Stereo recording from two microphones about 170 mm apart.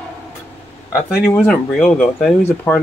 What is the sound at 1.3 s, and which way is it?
Speech, 5° left (ahead or behind).